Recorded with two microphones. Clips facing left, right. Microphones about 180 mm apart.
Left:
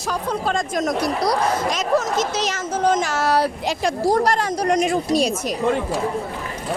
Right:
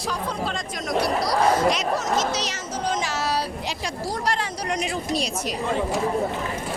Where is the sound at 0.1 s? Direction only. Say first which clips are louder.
Left 6 dB; 45° left (ahead or behind).